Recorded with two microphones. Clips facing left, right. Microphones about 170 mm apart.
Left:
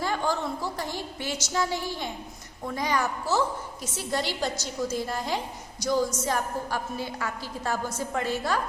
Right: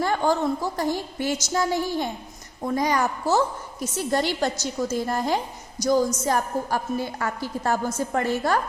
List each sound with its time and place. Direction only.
0.0 s a woman's voice: 55° right (ahead or behind)